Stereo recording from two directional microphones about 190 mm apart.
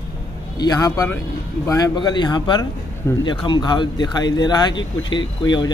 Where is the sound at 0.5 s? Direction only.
20° left (ahead or behind).